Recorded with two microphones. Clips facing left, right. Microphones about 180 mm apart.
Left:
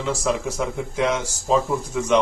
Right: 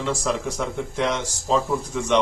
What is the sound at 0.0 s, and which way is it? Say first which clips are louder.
Speech: left 1 dB; 5° left (ahead or behind).